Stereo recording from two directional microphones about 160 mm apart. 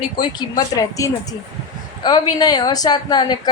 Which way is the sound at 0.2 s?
25° left (ahead or behind).